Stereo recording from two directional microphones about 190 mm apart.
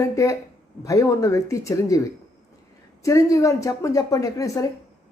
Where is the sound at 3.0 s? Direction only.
15° left (ahead or behind).